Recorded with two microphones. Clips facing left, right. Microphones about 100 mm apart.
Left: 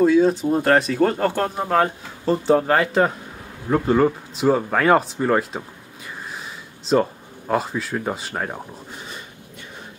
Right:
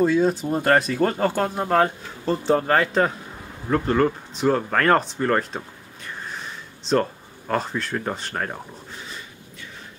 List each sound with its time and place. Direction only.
0.0 s speech: centre (ahead or behind)
6.9 s speech: 5° left (ahead or behind)